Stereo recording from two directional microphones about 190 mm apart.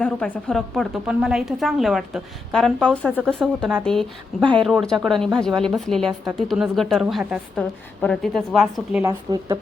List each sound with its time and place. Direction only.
0.0 s a woman's voice: 5° left (ahead or behind)
9.0 s speech: 20° right (ahead or behind)